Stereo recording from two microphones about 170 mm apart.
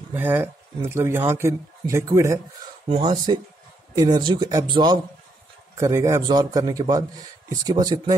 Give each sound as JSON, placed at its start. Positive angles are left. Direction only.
{"t": 0.1, "sound": "a man's voice", "side_deg": -10}